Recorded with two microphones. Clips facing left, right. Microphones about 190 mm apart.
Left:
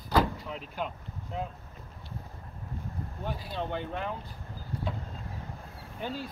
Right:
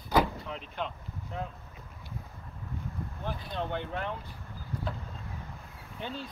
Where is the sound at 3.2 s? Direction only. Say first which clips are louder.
Left 1 dB; 5° left (ahead or behind).